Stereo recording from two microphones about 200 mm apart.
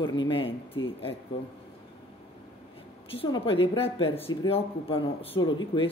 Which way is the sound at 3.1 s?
25° left (ahead or behind).